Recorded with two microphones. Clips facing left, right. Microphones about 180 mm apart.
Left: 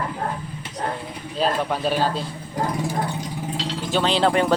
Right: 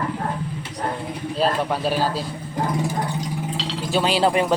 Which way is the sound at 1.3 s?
Centre (ahead or behind).